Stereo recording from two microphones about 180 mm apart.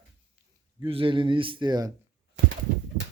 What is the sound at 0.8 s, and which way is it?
Speech, 30° right (ahead or behind).